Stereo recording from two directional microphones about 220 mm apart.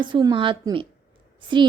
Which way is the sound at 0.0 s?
20° right (ahead or behind).